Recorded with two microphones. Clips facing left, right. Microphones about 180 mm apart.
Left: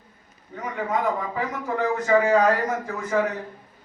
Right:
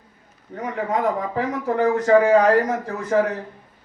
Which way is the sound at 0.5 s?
35° right (ahead or behind).